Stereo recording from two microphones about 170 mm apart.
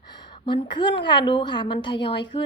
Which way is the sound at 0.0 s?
25° left (ahead or behind).